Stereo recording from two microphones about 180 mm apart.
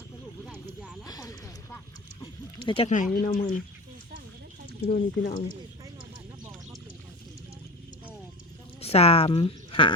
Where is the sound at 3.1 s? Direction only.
50° left (ahead or behind).